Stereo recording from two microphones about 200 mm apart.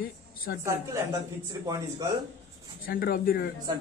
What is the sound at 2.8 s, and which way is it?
Speech, 45° left (ahead or behind).